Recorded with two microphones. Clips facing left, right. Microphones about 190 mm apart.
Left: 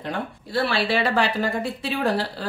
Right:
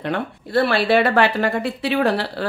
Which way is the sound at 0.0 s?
60° right (ahead or behind).